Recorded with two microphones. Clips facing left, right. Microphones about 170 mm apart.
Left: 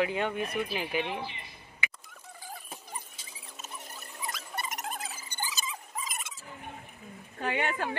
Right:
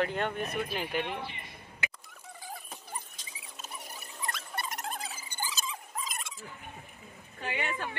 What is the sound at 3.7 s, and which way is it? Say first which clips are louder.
Squeal: even; 10° right (ahead or behind).